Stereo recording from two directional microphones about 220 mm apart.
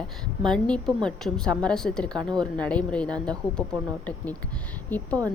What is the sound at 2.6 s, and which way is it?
Speech, 5° left (ahead or behind).